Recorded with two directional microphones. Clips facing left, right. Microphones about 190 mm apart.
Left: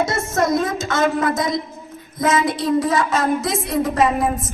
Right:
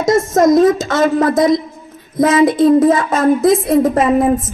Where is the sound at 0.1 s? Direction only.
40° right (ahead or behind).